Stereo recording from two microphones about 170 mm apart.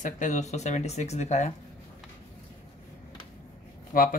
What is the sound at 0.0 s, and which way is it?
Speech, 45° left (ahead or behind).